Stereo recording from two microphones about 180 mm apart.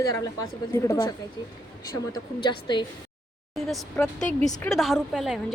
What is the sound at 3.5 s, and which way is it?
A woman's voice, centre (ahead or behind).